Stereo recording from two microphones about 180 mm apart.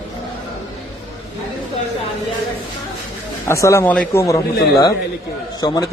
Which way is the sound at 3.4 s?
15° left (ahead or behind).